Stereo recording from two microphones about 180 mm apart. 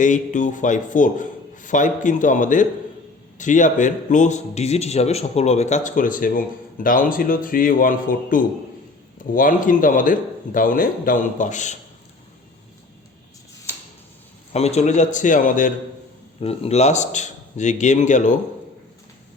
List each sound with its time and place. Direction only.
0.0 s a man's voice: 45° left (ahead or behind)
14.5 s a man's voice: 35° left (ahead or behind)
16.4 s a man's voice: 35° left (ahead or behind)